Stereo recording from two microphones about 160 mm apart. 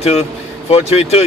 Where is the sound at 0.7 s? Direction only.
40° left (ahead or behind).